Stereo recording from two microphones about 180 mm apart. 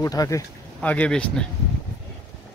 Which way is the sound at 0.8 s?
5° left (ahead or behind).